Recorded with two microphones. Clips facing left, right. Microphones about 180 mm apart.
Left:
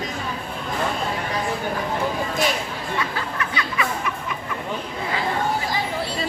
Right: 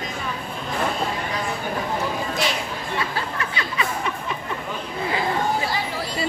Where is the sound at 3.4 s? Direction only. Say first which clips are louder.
Left 1 dB; 30° right (ahead or behind).